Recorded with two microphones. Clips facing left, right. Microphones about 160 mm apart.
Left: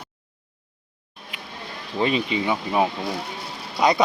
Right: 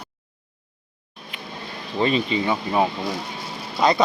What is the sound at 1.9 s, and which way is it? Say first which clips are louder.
Speech: right 1 dB; 10° left (ahead or behind).